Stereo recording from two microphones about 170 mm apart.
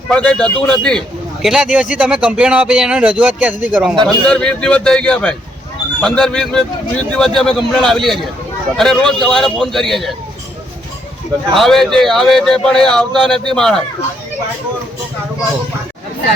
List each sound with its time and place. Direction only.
0.1 s a man's voice: 5° left (ahead or behind); by 3.9 s 10° right (ahead or behind)
3.9 s a man's voice: 25° right (ahead or behind)
4.3 s a man's voice: 5° left (ahead or behind)
11.5 s a man's voice: centre (ahead or behind)